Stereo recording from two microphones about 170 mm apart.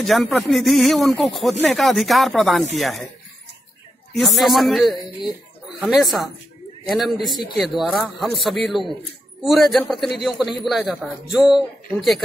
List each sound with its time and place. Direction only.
0.0 s speech: centre (ahead or behind)
4.1 s speech: centre (ahead or behind)